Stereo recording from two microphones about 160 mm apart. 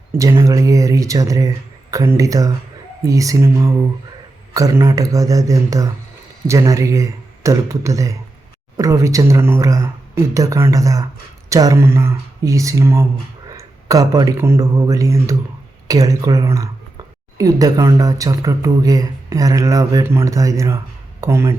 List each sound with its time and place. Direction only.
0.2 s speech: 20° right (ahead or behind)